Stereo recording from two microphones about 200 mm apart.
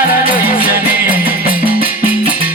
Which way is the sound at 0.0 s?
45° left (ahead or behind).